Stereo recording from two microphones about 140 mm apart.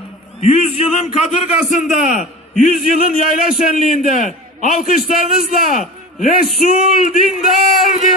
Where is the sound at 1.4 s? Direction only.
65° left (ahead or behind).